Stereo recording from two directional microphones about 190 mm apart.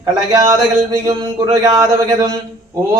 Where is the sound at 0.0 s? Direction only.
20° right (ahead or behind).